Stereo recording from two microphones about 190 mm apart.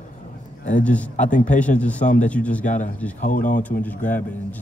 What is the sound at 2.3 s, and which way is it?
Speech, 5° left (ahead or behind).